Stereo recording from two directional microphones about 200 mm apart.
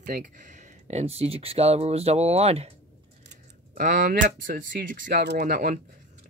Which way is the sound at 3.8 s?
45° right (ahead or behind).